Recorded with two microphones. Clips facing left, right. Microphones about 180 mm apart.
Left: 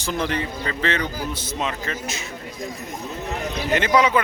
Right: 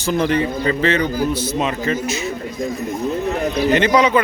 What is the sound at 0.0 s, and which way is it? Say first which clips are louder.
A man's voice: right 7 dB; 5° right (ahead or behind).